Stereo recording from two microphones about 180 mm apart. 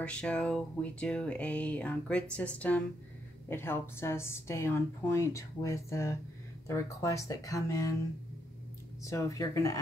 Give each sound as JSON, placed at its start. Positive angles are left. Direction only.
{"t": 0.0, "sound": "speech", "side_deg": 5}
{"t": 9.0, "sound": "speech", "side_deg": 15}